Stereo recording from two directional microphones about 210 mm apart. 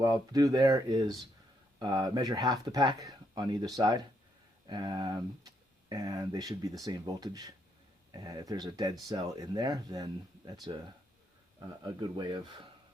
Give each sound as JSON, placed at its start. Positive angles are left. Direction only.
{"t": 0.0, "sound": "speech", "side_deg": -15}
{"t": 11.8, "sound": "speech", "side_deg": -20}